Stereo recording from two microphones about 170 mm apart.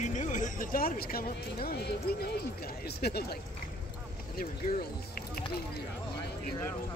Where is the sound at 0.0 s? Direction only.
45° left (ahead or behind); by 3.3 s 65° left (ahead or behind).